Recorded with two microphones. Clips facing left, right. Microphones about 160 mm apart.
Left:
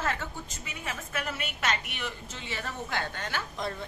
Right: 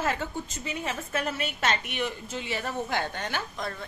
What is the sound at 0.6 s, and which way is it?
A woman's voice, 30° right (ahead or behind).